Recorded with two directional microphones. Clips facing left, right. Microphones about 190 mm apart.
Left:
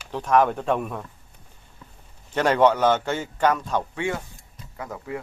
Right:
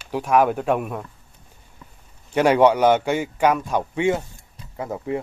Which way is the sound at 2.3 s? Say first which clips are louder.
Right 3 dB; 10° right (ahead or behind).